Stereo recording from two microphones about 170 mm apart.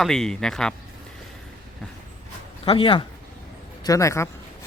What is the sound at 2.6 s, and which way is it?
Speech, 30° left (ahead or behind).